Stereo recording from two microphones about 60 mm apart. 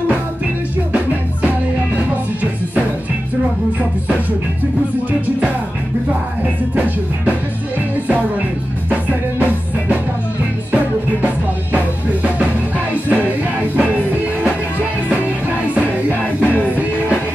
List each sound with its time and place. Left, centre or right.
8.1 s music: right
11.2 s music: right
16.4 s music: left